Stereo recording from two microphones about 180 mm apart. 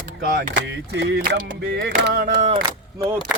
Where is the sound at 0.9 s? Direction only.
70° right (ahead or behind).